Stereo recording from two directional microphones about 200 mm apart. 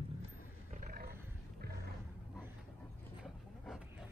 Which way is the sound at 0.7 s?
45° right (ahead or behind).